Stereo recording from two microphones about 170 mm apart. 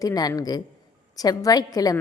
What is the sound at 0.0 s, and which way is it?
A woman's voice, 20° left (ahead or behind).